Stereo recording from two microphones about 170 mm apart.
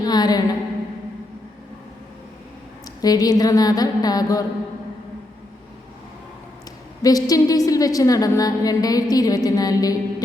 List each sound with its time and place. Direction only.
0.0 s a woman's voice: 25° left (ahead or behind)
3.0 s a woman's voice: 20° left (ahead or behind)
7.0 s a woman's voice: 20° left (ahead or behind)